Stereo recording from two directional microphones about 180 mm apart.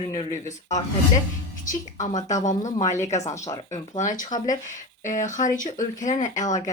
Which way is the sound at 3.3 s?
20° left (ahead or behind).